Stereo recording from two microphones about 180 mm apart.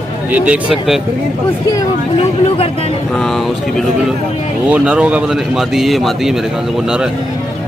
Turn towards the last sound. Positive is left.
turn(degrees=0)  # may be behind; listen again after turning